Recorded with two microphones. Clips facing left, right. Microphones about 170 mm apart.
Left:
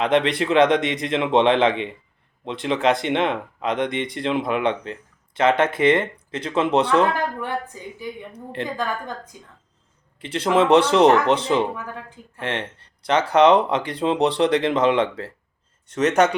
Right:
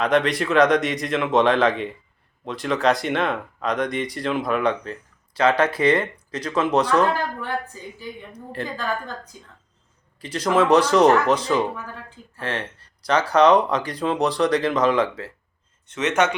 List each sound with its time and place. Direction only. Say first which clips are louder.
0.0 s speech: left 1 dB; 25° left (ahead or behind)
10.2 s speech: left 1 dB; 25° left (ahead or behind)